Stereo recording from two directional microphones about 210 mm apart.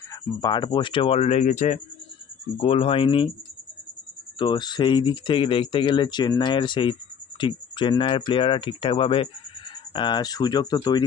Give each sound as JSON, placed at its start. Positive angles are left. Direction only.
{"t": 0.1, "sound": "speech", "side_deg": 20}
{"t": 4.4, "sound": "speech", "side_deg": 20}